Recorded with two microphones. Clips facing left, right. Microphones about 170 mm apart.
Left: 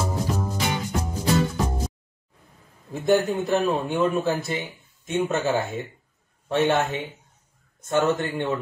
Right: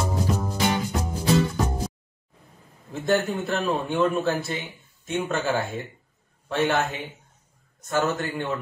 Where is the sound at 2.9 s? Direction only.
15° left (ahead or behind).